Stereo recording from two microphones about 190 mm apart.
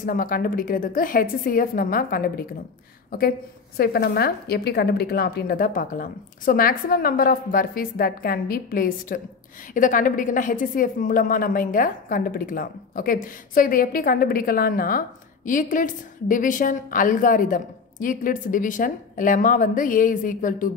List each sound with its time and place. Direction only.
0.0 s a woman's voice: 45° left (ahead or behind)